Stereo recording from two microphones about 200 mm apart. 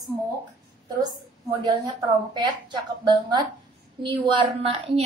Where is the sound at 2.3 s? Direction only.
20° right (ahead or behind).